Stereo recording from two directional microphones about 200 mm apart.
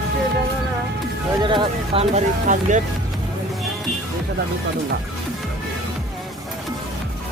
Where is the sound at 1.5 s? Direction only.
25° right (ahead or behind).